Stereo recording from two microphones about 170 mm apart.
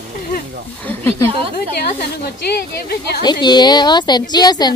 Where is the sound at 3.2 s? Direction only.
25° left (ahead or behind).